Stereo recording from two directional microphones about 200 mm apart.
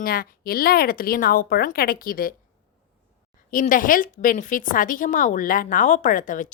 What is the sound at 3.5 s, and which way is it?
A woman's voice, 40° left (ahead or behind).